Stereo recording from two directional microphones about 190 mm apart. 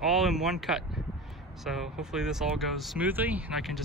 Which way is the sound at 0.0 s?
Centre (ahead or behind).